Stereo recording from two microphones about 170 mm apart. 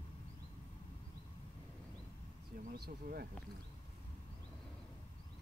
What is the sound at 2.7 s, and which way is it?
Speech, 65° right (ahead or behind).